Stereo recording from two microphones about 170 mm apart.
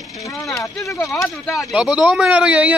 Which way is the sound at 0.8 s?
20° left (ahead or behind).